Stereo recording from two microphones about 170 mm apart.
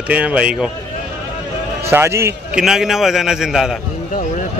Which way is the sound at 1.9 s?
15° right (ahead or behind).